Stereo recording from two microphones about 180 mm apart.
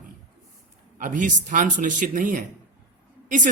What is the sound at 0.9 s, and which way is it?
Speech, 50° right (ahead or behind).